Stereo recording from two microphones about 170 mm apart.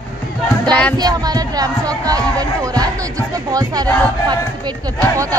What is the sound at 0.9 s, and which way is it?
Music, 25° right (ahead or behind).